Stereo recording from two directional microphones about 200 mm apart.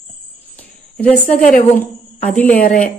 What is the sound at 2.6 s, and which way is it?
Speech, 40° left (ahead or behind).